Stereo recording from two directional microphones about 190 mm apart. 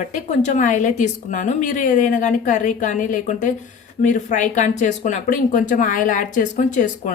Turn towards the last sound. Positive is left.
turn(degrees=40)  # may be behind; listen again after turning